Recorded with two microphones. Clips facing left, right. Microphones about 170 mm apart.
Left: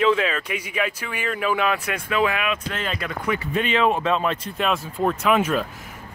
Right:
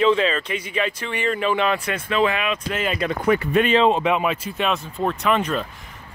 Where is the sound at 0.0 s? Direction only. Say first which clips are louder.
Right 2 dB; 5° left (ahead or behind).